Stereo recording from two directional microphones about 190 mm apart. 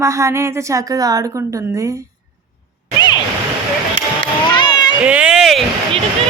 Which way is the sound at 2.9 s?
25° left (ahead or behind).